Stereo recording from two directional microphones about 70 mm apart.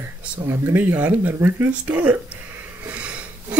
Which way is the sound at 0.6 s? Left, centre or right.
Right.